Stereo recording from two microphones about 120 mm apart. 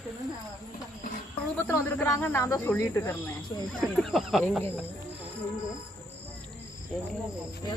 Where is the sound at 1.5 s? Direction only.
20° left (ahead or behind).